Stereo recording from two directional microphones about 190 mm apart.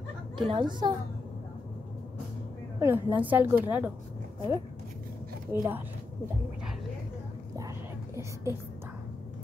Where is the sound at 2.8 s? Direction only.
10° right (ahead or behind).